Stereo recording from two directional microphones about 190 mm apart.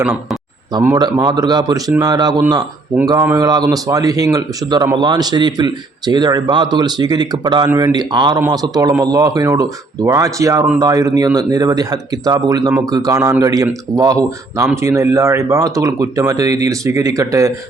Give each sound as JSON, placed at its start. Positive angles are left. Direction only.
{"t": 0.7, "sound": "a man's voice", "side_deg": -20}